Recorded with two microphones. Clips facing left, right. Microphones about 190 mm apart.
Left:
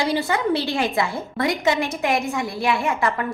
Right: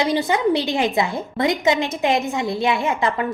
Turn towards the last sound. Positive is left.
turn(degrees=-20)  # may be behind; listen again after turning